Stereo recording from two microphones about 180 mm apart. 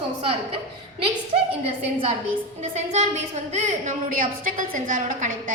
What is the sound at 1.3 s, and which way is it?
Speech, 35° right (ahead or behind).